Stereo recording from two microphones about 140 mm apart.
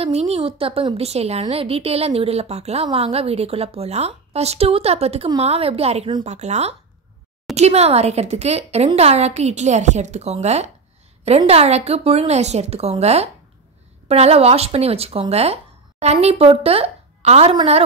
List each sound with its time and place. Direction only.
0.0 s a woman's voice: 45° right (ahead or behind)